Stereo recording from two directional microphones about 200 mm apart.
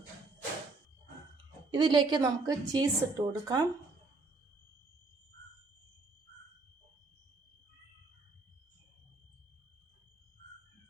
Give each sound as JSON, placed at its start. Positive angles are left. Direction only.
{"t": 1.7, "sound": "a woman's voice", "side_deg": -25}